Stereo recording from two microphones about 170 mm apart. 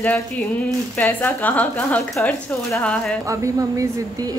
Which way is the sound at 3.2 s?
20° right (ahead or behind).